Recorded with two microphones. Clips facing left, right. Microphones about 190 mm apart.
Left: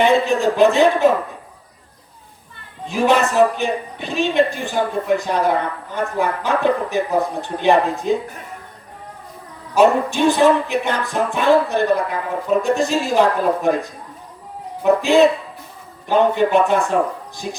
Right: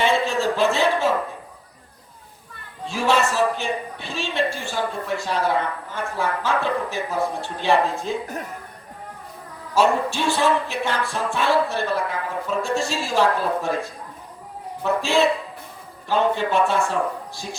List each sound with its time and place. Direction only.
0.0 s speech: 15° left (ahead or behind)
2.8 s speech: 15° left (ahead or behind)
9.7 s speech: 15° left (ahead or behind)